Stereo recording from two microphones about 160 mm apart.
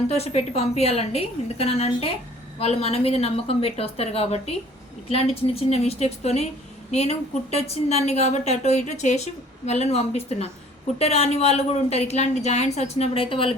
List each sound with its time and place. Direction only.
0.1 s a woman's voice: 40° left (ahead or behind)